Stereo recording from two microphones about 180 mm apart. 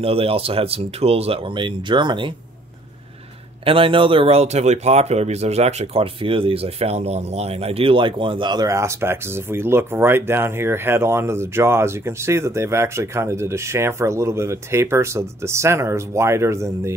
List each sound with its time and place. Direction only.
0.0 s speech: 30° right (ahead or behind)
3.6 s speech: 30° right (ahead or behind)